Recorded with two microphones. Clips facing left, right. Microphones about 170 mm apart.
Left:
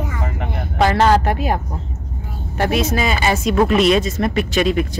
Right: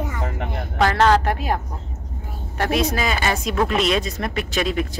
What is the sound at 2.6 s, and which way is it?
Speech, centre (ahead or behind).